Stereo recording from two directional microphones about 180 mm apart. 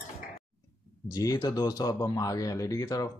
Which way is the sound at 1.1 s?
20° left (ahead or behind).